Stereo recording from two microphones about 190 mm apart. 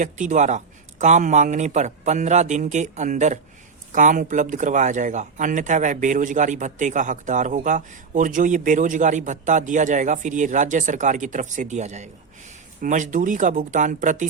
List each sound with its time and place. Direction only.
0.0 s speech: 40° right (ahead or behind)